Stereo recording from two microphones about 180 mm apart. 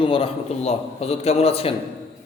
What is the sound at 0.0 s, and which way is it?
A man's voice, 30° left (ahead or behind).